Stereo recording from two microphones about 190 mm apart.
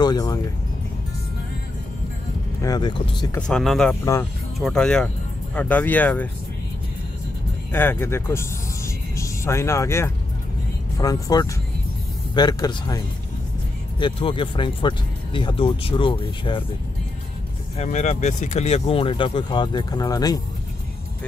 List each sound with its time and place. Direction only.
0.0 s speech: 20° left (ahead or behind)
2.6 s speech: 20° left (ahead or behind)
3.3 s speech: 5° left (ahead or behind)
4.0 s speech: 15° left (ahead or behind)
4.6 s speech: centre (ahead or behind)
7.7 s speech: 10° left (ahead or behind); by 16.6 s 25° left (ahead or behind)
17.7 s speech: 35° left (ahead or behind); by 20.4 s 20° left (ahead or behind)